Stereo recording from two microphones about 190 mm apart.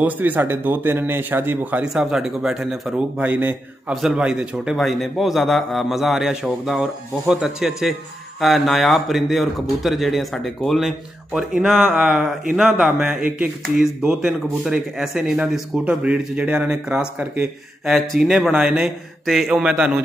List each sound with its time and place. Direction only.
0.0 s speech: 10° right (ahead or behind)